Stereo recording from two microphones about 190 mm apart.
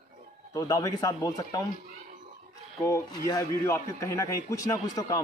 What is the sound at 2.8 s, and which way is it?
A man's voice, 20° left (ahead or behind).